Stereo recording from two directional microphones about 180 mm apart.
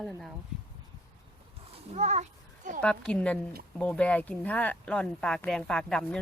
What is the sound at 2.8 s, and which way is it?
Speech, 5° left (ahead or behind).